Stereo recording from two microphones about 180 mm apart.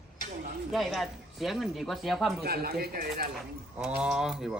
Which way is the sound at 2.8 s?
60° right (ahead or behind).